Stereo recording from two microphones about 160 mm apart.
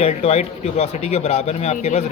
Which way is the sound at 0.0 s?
40° left (ahead or behind).